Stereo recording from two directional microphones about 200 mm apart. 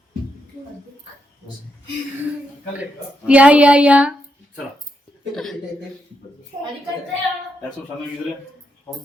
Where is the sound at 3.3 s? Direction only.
5° right (ahead or behind).